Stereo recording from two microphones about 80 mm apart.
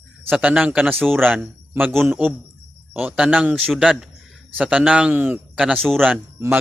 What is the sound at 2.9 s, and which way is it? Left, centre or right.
A man's voice, right.